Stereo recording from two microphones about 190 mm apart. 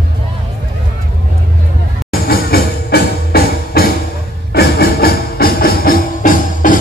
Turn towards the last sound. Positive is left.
turn(degrees=45)  # may be behind; listen again after turning